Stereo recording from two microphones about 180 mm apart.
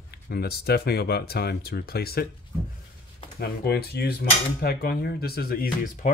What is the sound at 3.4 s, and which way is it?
Speech, 65° left (ahead or behind).